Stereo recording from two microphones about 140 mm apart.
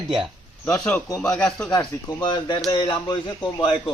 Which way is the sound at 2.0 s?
30° left (ahead or behind).